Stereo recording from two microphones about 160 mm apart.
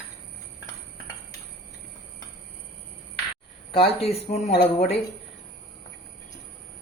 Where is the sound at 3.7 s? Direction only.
35° left (ahead or behind).